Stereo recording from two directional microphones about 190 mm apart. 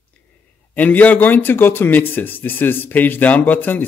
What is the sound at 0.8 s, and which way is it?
Speech, 10° left (ahead or behind).